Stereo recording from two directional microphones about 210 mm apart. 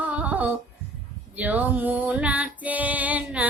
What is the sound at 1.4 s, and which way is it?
Female singing, 5° right (ahead or behind).